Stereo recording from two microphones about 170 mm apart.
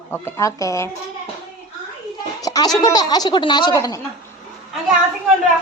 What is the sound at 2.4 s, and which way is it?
Speech, 20° left (ahead or behind).